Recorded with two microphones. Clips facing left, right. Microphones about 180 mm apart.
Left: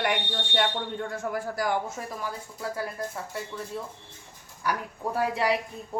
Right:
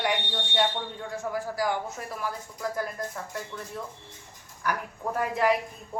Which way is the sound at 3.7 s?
10° left (ahead or behind).